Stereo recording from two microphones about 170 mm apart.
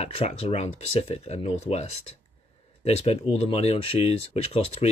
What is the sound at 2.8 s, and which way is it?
Speech, 35° left (ahead or behind).